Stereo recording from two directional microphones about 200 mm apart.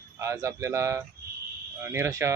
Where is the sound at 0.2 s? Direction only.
15° right (ahead or behind).